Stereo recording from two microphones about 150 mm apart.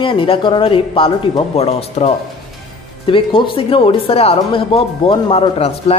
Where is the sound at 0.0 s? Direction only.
35° left (ahead or behind).